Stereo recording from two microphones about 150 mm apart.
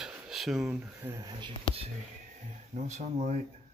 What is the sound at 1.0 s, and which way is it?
Speech, 20° right (ahead or behind).